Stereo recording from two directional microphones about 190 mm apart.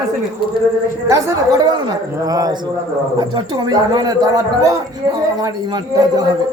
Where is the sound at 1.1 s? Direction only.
15° right (ahead or behind).